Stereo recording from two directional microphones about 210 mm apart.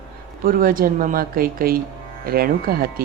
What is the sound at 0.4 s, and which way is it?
Speech, 40° right (ahead or behind).